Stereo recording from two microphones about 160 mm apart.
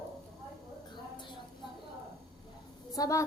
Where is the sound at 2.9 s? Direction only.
20° left (ahead or behind).